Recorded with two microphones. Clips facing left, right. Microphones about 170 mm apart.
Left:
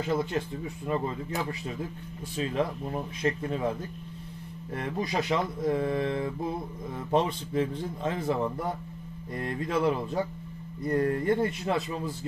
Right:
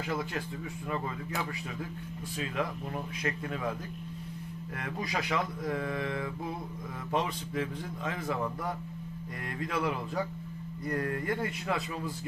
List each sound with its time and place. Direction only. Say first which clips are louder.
0.0 s speech: left 6 dB; 25° left (ahead or behind)